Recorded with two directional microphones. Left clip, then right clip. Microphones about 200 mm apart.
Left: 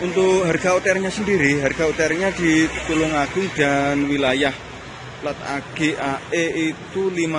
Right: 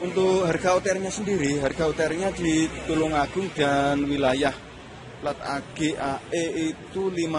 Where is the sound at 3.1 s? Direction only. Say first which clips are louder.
Left 4 dB; 10° right (ahead or behind).